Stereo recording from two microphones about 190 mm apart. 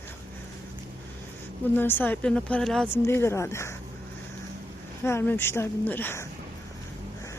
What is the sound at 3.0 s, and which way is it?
Speech, 15° left (ahead or behind).